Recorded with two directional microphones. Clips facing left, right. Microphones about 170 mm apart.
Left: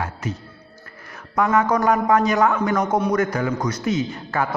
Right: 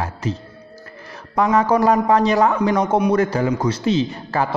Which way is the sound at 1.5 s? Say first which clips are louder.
Right 3 dB; 30° right (ahead or behind).